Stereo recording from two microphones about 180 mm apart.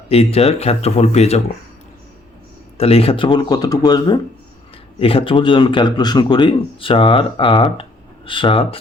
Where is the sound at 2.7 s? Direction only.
35° left (ahead or behind).